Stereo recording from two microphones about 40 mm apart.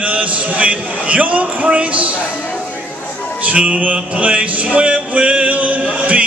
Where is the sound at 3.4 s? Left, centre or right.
Right.